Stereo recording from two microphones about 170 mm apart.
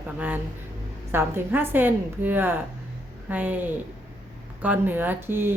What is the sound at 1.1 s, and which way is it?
A woman's voice, 15° right (ahead or behind).